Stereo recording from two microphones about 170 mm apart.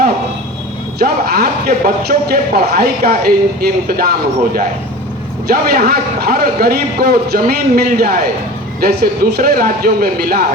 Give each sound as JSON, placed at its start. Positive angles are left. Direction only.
{"t": 0.9, "sound": "speech", "side_deg": -65}
{"t": 5.5, "sound": "speech", "side_deg": -65}